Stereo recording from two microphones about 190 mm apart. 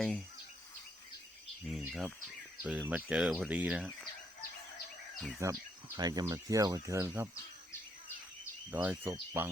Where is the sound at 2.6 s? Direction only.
10° right (ahead or behind).